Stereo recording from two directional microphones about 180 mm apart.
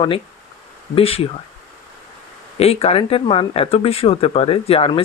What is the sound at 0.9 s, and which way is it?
Speech, 30° left (ahead or behind).